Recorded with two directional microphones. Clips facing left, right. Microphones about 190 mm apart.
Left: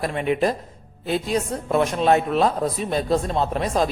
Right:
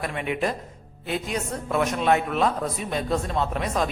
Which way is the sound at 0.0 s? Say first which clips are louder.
Left 5 dB; 35° left (ahead or behind).